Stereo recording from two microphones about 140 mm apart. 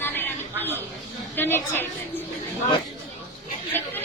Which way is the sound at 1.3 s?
15° left (ahead or behind).